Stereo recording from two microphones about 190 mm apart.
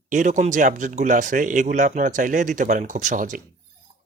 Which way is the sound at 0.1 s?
40° right (ahead or behind).